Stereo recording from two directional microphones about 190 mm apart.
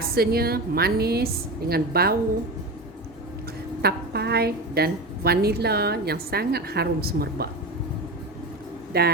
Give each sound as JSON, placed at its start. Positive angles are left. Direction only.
{"t": 0.1, "sound": "a woman's voice", "side_deg": -55}
{"t": 3.8, "sound": "a woman's voice", "side_deg": -60}
{"t": 8.9, "sound": "a woman's voice", "side_deg": -55}